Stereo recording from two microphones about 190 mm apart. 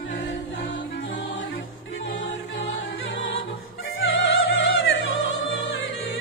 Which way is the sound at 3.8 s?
85° left.